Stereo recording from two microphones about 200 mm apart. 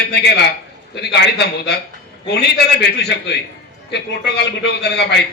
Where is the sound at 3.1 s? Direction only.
60° left (ahead or behind).